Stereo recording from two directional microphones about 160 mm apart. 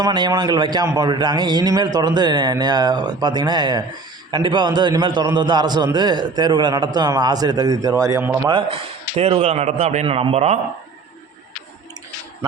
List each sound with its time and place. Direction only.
0.0 s a man's voice: 25° right (ahead or behind)
8.4 s a man's voice: 35° right (ahead or behind)